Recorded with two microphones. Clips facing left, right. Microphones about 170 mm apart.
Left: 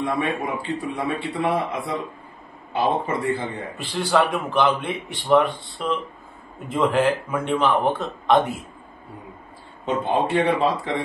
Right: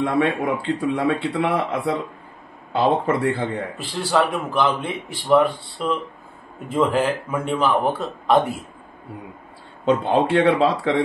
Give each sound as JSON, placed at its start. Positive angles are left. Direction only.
{"t": 0.0, "sound": "a man's voice", "side_deg": -70}
{"t": 3.8, "sound": "a man's voice", "side_deg": 0}
{"t": 9.8, "sound": "speech", "side_deg": -85}